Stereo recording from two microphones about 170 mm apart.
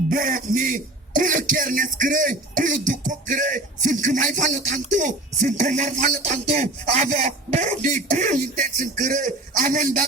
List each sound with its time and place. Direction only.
0.1 s a man's voice: 50° right (ahead or behind)